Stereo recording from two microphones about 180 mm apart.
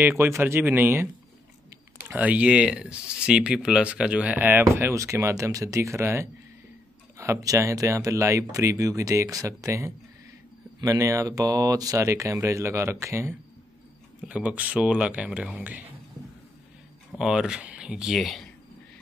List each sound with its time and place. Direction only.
0.0 s speech: 15° right (ahead or behind)
2.0 s speech: 10° right (ahead or behind)
17.1 s speech: 5° right (ahead or behind)